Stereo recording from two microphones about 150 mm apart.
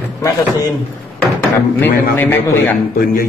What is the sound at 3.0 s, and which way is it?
Speech, 75° left (ahead or behind).